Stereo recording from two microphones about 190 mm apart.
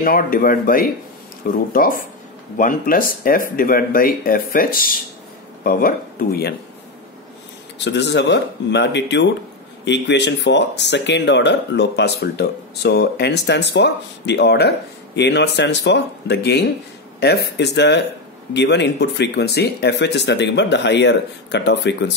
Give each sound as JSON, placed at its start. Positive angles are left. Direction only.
{"t": 0.0, "sound": "speech", "side_deg": 50}
{"t": 7.8, "sound": "speech", "side_deg": 65}